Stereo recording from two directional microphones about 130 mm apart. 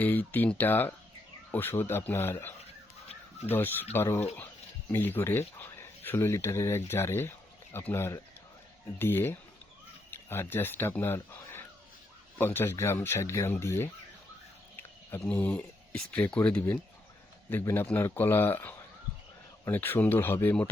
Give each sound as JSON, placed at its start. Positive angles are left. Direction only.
{"t": 0.0, "sound": "speech", "side_deg": 15}